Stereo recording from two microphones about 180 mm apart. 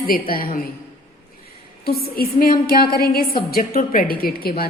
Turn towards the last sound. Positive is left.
turn(degrees=55)  # may be behind; listen again after turning